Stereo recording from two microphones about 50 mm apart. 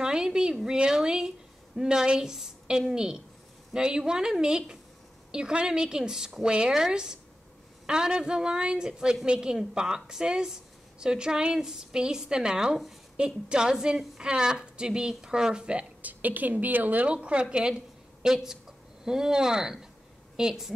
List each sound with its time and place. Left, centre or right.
0.0 s a woman's voice: centre
16.0 s a woman's voice: right; by 20.7 s centre